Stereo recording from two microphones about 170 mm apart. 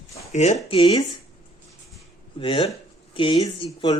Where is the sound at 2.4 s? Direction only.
30° left (ahead or behind).